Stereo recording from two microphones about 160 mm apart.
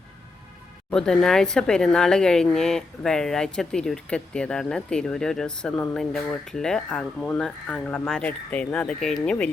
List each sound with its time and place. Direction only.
0.9 s speech: 5° left (ahead or behind)